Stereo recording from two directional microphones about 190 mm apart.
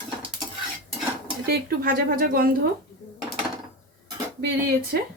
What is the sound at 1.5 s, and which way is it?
A woman's voice, 55° right (ahead or behind).